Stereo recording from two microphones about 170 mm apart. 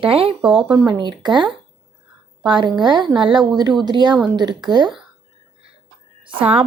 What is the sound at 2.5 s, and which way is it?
Speech, 25° right (ahead or behind).